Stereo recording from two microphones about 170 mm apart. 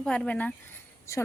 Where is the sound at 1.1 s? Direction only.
15° left (ahead or behind).